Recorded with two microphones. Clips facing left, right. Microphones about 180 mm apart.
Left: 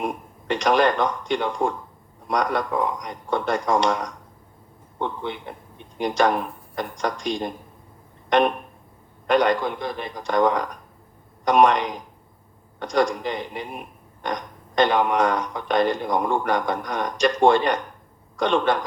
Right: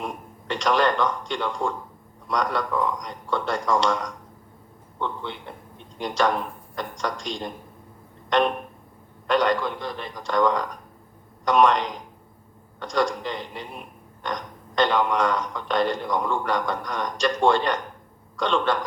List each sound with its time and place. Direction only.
0.0 s speech: 15° left (ahead or behind)
4.9 s a man's voice: 15° left (ahead or behind)
9.3 s speech: 15° left (ahead or behind)